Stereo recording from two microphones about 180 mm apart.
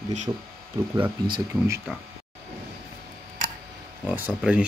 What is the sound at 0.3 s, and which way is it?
Speech, 25° right (ahead or behind).